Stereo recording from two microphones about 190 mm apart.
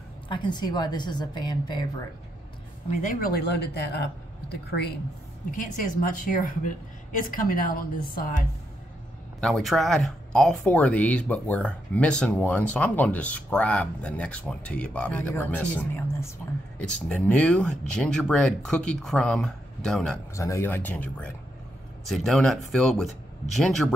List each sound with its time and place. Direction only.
0.3 s a woman's voice: 25° left (ahead or behind)
3.0 s speech: 50° left (ahead or behind)
5.6 s a woman's voice: 45° left (ahead or behind)
9.4 s speech: centre (ahead or behind)
20.3 s speech: 15° left (ahead or behind)